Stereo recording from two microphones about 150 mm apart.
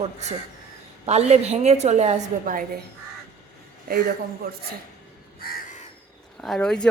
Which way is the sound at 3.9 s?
80° right.